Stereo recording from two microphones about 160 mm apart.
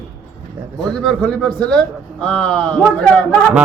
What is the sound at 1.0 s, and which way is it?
A man's voice, 5° left (ahead or behind).